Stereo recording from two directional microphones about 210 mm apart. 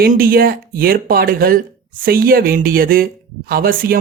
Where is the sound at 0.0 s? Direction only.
45° right (ahead or behind).